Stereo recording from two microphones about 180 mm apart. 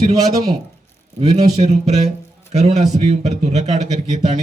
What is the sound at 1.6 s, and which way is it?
A man's voice, 40° right (ahead or behind).